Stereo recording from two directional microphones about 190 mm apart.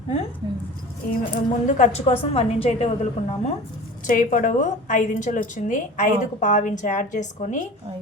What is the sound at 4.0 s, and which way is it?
A woman's voice, 45° left (ahead or behind).